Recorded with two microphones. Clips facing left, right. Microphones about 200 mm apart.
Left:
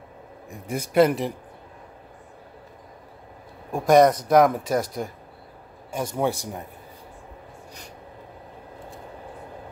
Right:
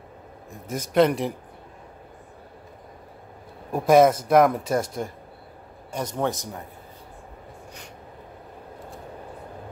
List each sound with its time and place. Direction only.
0.5 s speech: 10° left (ahead or behind)
3.7 s speech: 5° right (ahead or behind)
4.8 s speech: 25° right (ahead or behind)
6.1 s speech: 10° left (ahead or behind)